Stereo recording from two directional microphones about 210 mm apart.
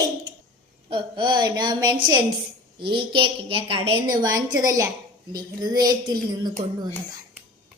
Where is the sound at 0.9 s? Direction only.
25° right (ahead or behind).